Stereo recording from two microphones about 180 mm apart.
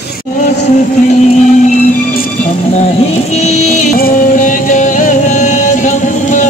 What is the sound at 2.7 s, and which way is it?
Music, 35° left (ahead or behind).